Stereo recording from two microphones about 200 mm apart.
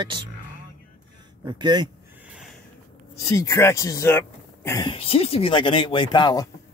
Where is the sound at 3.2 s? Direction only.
15° left (ahead or behind).